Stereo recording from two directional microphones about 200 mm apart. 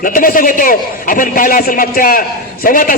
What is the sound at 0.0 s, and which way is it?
A man's voice, 45° left (ahead or behind).